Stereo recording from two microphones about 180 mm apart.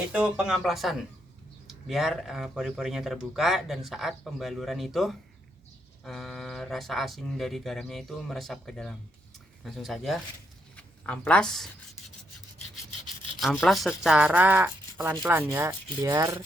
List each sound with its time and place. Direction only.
0.1 s speech: 5° right (ahead or behind)
13.4 s speech: centre (ahead or behind)
14.9 s speech: 20° right (ahead or behind)